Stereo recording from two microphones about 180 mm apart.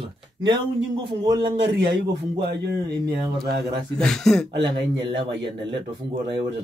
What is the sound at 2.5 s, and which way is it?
Speech, 65° right (ahead or behind).